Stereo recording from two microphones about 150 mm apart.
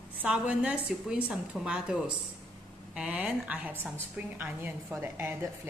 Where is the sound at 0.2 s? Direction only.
5° right (ahead or behind).